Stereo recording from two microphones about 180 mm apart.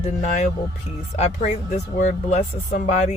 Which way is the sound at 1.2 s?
45° left (ahead or behind).